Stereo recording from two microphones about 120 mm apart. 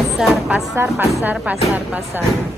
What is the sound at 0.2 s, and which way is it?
A woman's voice, 5° right (ahead or behind).